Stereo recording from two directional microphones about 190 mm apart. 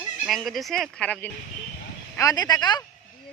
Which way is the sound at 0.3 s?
Centre (ahead or behind).